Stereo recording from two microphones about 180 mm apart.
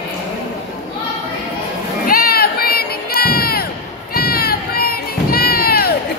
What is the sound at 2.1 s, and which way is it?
Crowd, 55° left (ahead or behind).